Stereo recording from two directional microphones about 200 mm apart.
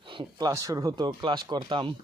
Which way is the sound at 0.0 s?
25° right (ahead or behind).